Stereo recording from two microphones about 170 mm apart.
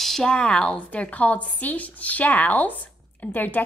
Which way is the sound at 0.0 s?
5° left (ahead or behind).